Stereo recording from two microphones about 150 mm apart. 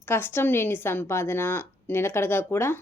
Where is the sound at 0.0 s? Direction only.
15° left (ahead or behind).